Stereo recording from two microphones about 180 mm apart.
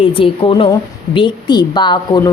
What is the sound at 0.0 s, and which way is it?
A woman's voice, 30° left (ahead or behind).